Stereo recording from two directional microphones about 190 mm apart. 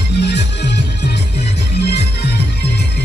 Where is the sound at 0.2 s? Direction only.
60° left (ahead or behind).